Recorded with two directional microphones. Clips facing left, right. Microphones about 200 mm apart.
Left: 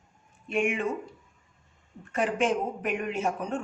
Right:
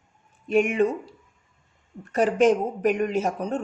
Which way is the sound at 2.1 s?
40° right (ahead or behind).